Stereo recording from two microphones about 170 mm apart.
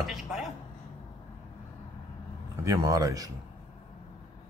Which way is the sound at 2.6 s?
20° right (ahead or behind).